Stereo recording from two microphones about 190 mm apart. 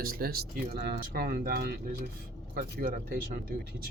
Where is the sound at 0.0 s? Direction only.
50° right (ahead or behind).